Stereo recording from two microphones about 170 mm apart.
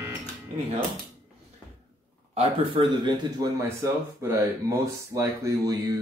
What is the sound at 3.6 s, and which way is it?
Speech, 15° right (ahead or behind).